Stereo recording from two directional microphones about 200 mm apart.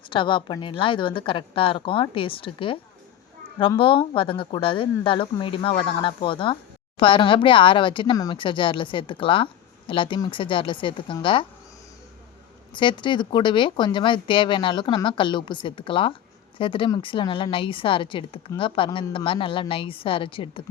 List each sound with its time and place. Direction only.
0.1 s speech: 25° left (ahead or behind)
12.7 s speech: 25° left (ahead or behind)